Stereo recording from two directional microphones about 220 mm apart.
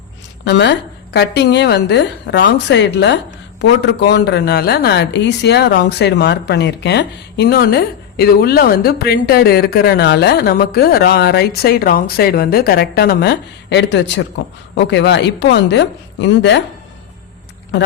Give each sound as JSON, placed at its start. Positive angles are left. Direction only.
{"t": 0.4, "sound": "speech", "side_deg": 50}